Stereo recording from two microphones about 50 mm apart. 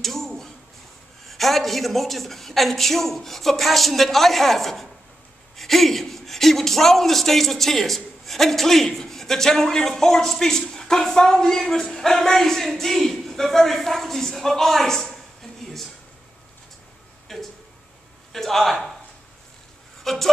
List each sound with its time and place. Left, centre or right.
0.0 s a sound: centre
1.2 s a woman's voice: centre
17.3 s a woman's voice: centre
20.0 s speech: centre